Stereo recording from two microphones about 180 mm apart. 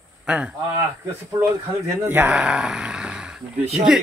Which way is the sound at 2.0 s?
10° right (ahead or behind).